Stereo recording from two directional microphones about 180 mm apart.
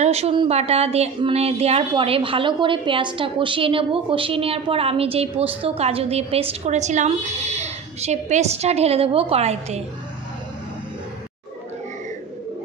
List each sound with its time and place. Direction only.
0.0 s speech: 35° right (ahead or behind)